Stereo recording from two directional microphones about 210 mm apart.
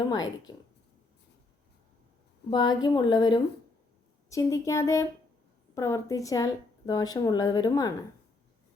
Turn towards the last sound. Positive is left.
turn(degrees=20)  # may be behind; listen again after turning